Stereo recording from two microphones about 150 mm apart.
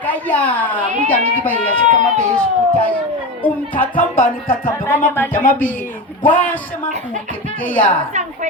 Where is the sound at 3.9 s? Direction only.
65° left (ahead or behind).